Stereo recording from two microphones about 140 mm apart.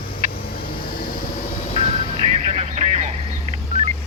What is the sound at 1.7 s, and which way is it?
Music, 55° left (ahead or behind).